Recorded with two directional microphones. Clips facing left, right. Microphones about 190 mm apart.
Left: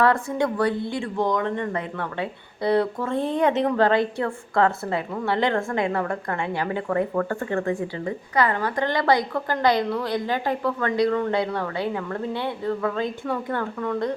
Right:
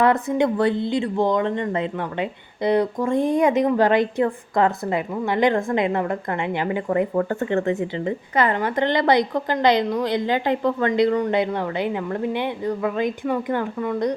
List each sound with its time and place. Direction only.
0.0 s speech: 20° right (ahead or behind)